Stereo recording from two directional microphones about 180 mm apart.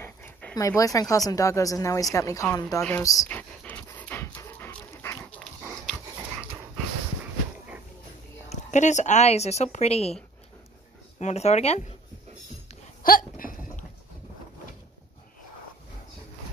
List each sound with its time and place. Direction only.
0.0 s a sound: 10° left (ahead or behind)
0.6 s a woman's voice: 20° left (ahead or behind)
3.0 s pant: 20° left (ahead or behind); by 5.9 s centre (ahead or behind)
8.5 s a woman's voice: 40° left (ahead or behind)
11.1 s a woman's voice: 40° left (ahead or behind)
13.0 s hiccup: 55° left (ahead or behind)